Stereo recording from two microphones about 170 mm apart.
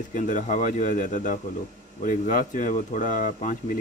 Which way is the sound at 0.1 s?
50° left (ahead or behind).